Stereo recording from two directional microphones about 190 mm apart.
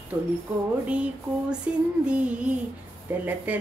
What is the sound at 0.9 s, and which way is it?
Female singing, 5° right (ahead or behind).